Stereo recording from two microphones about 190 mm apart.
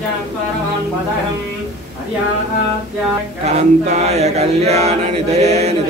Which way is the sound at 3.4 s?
35° right (ahead or behind).